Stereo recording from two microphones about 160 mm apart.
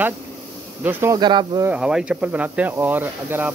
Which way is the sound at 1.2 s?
30° right (ahead or behind).